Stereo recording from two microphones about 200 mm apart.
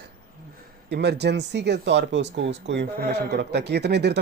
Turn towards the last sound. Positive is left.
turn(degrees=-55)  # may be behind; listen again after turning